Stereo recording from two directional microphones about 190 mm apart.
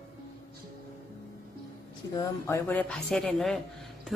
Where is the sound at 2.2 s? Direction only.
15° left (ahead or behind).